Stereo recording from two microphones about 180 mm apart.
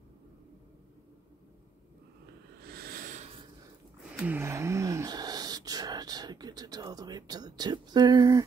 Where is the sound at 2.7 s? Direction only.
55° right (ahead or behind).